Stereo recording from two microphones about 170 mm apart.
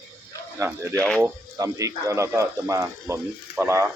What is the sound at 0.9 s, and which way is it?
Speech, 5° left (ahead or behind).